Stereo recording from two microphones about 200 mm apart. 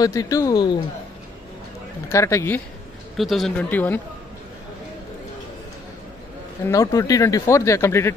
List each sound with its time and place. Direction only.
0.0 s speech: 15° left (ahead or behind)
2.0 s speech: 15° left (ahead or behind)
3.2 s speech: centre (ahead or behind)
6.6 s speech: 15° left (ahead or behind)